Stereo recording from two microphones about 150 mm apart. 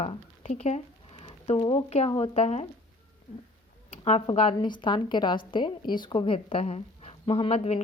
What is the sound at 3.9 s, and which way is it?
Speech, 45° left (ahead or behind).